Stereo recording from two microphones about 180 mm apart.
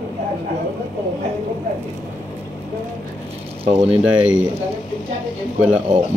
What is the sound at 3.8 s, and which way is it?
Speech, 5° right (ahead or behind).